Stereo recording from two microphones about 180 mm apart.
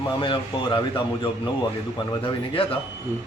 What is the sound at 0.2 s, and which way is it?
Speech, 30° left (ahead or behind).